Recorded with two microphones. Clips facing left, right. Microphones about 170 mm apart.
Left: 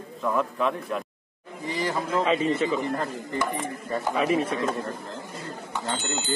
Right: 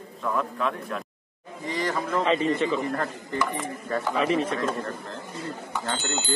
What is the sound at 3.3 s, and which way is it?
Speech, 30° left (ahead or behind).